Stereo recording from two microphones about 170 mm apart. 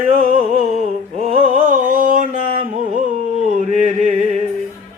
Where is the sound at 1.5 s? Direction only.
50° right (ahead or behind).